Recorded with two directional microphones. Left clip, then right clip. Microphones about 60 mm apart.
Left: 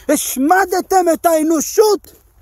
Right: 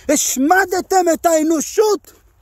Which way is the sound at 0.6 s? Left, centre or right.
Centre.